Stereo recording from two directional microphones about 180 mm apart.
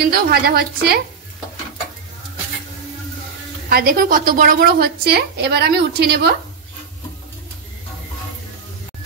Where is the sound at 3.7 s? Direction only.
55° right (ahead or behind).